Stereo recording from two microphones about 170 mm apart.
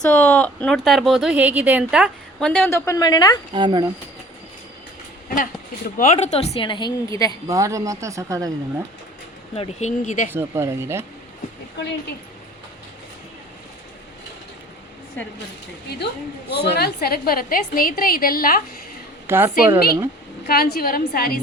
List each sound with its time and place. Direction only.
0.0 s speech: 10° left (ahead or behind)
2.4 s a woman's voice: 15° left (ahead or behind)
3.5 s speech: 25° right (ahead or behind)
5.3 s a woman's voice: 50° left (ahead or behind); by 7.3 s 20° left (ahead or behind)
7.4 s speech: 20° right (ahead or behind)
9.6 s speech: 45° left (ahead or behind)
10.3 s speech: 15° right (ahead or behind)
16.6 s a woman's voice: 70° left (ahead or behind)
19.3 s speech: 15° right (ahead or behind)
20.5 s a woman's voice: 65° left (ahead or behind)